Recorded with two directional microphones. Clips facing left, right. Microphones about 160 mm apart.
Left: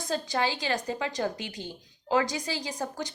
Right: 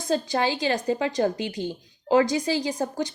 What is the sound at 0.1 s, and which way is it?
A woman's voice, 25° right (ahead or behind).